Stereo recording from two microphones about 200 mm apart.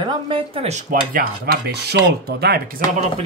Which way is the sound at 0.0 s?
25° right (ahead or behind).